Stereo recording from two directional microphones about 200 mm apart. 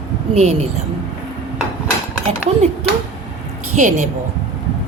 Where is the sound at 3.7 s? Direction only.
40° right (ahead or behind).